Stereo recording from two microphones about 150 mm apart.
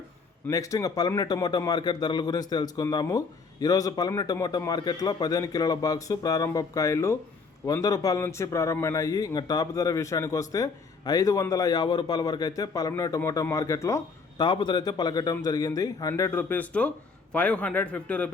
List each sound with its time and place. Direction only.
0.4 s a man's voice: 20° left (ahead or behind)
14.4 s a man's voice: 30° left (ahead or behind); by 18.3 s 10° left (ahead or behind)